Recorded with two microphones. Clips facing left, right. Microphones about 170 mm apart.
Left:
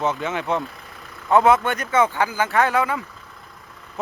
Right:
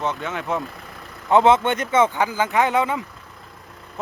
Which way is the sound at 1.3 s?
20° right (ahead or behind).